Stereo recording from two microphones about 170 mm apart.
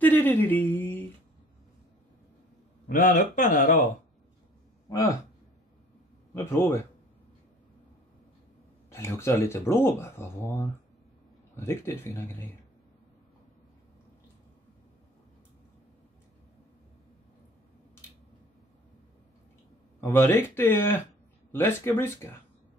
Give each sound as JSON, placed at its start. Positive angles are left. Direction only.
{"t": 0.0, "sound": "a sound", "side_deg": 10}
{"t": 2.9, "sound": "speech", "side_deg": 50}
{"t": 4.8, "sound": "a sound", "side_deg": 20}
{"t": 6.3, "sound": "speech", "side_deg": 15}
{"t": 8.9, "sound": "speech", "side_deg": 15}
{"t": 20.0, "sound": "speech", "side_deg": 15}